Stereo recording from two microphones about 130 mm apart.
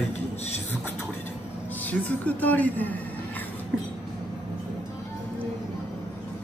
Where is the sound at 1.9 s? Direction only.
10° left (ahead or behind).